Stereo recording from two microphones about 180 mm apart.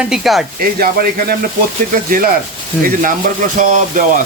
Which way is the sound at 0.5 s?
55° right (ahead or behind).